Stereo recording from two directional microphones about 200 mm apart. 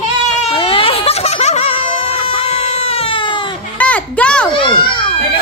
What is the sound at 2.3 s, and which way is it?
Baby cry, 30° left (ahead or behind).